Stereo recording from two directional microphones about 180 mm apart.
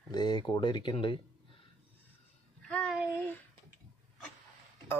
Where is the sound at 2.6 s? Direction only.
5° left (ahead or behind).